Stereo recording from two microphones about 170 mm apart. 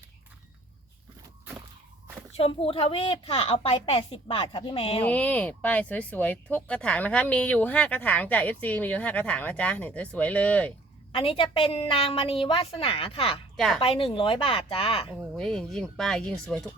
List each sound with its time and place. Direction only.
2.3 s a woman's voice: 35° left (ahead or behind)
5.0 s speech: 10° left (ahead or behind)
11.1 s a woman's voice: 30° left (ahead or behind)
15.4 s speech: centre (ahead or behind)